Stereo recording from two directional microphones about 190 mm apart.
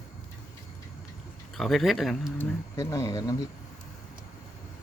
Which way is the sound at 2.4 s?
15° left (ahead or behind).